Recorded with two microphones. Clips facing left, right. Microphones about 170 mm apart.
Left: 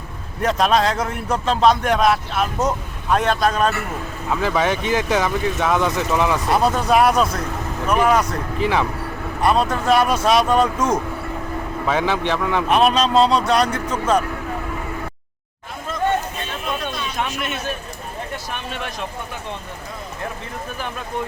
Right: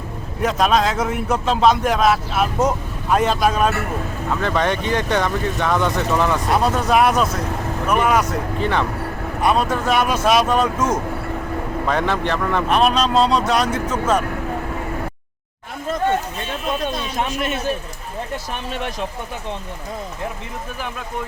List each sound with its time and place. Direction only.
0.4 s a man's voice: centre (ahead or behind)
4.3 s a man's voice: 5° left (ahead or behind)
16.8 s a sound: 30° right (ahead or behind)